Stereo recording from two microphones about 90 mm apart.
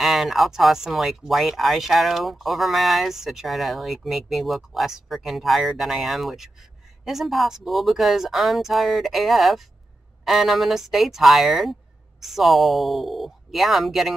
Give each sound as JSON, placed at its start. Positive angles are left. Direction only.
{"t": 0.0, "sound": "speech", "side_deg": 0}